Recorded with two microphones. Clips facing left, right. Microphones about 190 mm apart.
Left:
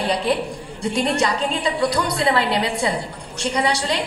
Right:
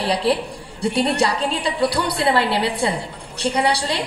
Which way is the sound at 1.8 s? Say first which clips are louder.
Right 1 dB; 30° right (ahead or behind).